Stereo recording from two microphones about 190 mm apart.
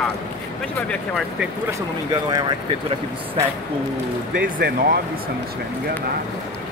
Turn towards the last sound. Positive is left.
turn(degrees=-50)  # may be behind; listen again after turning